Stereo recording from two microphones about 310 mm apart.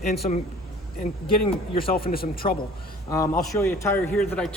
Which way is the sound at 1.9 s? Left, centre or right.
Left.